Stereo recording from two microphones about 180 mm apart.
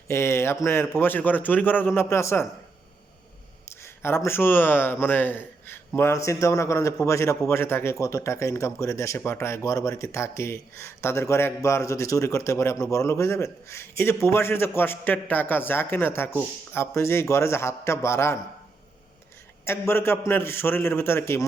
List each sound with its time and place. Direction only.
0.1 s a man's voice: 15° left (ahead or behind)
3.7 s a man's voice: 15° left (ahead or behind)
19.6 s a man's voice: 15° left (ahead or behind)